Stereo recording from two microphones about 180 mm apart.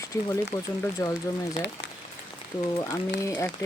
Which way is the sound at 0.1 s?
15° left (ahead or behind).